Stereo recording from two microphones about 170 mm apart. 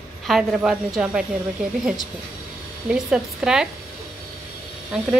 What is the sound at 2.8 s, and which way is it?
Speech, 5° right (ahead or behind).